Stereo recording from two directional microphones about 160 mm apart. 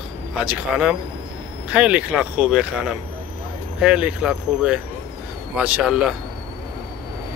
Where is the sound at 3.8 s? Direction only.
5° right (ahead or behind).